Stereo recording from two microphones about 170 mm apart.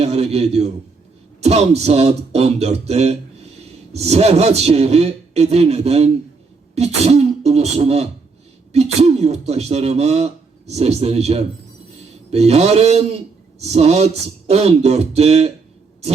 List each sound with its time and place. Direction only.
0.0 s speech: 40° right (ahead or behind)